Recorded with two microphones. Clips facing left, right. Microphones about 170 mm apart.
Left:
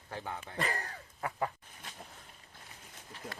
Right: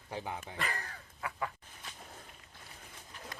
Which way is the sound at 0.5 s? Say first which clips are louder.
Left 3 dB; 35° left (ahead or behind).